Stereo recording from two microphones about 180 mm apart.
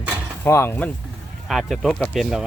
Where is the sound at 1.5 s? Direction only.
Centre (ahead or behind).